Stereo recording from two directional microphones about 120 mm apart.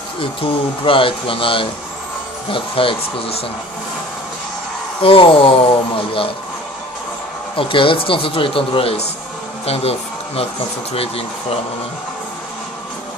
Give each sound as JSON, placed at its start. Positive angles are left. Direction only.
{"t": 0.2, "sound": "speech", "side_deg": 45}
{"t": 5.0, "sound": "speech", "side_deg": 50}
{"t": 7.5, "sound": "speech", "side_deg": 45}